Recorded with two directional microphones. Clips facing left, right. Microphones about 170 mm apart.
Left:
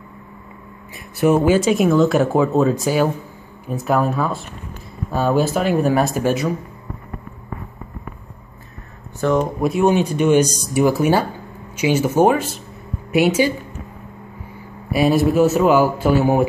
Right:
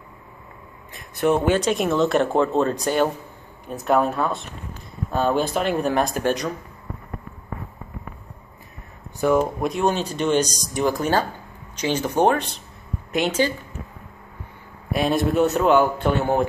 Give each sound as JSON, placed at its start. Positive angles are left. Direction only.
{"t": 0.9, "sound": "speech", "side_deg": 5}
{"t": 9.2, "sound": "speech", "side_deg": -10}
{"t": 9.6, "sound": "speech", "side_deg": 5}
{"t": 14.9, "sound": "speech", "side_deg": 5}